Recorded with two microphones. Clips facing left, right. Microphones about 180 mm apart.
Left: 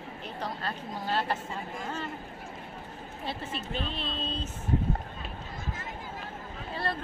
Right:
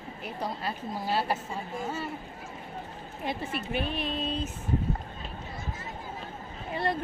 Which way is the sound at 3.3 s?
10° right (ahead or behind).